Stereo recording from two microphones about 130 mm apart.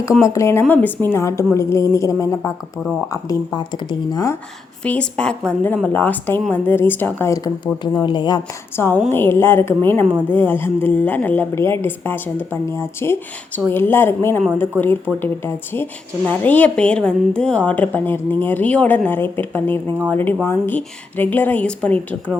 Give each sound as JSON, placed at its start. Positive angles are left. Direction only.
{"t": 0.2, "sound": "a woman's voice", "side_deg": 20}
{"t": 4.8, "sound": "a woman's voice", "side_deg": 10}
{"t": 8.0, "sound": "speech", "side_deg": 35}
{"t": 8.7, "sound": "a woman's voice", "side_deg": 20}